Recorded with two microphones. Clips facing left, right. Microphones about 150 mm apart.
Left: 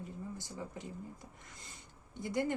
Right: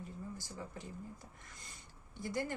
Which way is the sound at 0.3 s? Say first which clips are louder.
Left 3 dB; 20° left (ahead or behind).